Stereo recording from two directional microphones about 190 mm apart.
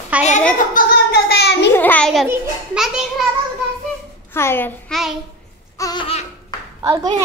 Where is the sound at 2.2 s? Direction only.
5° right (ahead or behind).